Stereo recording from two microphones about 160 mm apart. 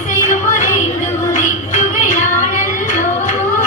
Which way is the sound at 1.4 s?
45° left (ahead or behind).